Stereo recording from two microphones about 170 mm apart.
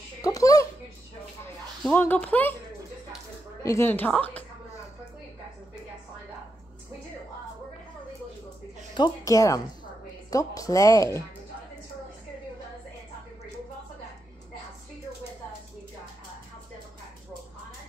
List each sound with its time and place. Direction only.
0.2 s a sound: 20° left (ahead or behind)
1.8 s a woman's voice: 10° left (ahead or behind)
3.6 s a woman's voice: 15° left (ahead or behind)
8.9 s speech: 20° left (ahead or behind)